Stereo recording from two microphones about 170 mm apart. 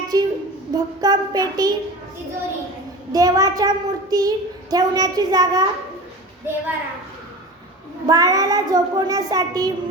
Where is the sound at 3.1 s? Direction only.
20° right (ahead or behind).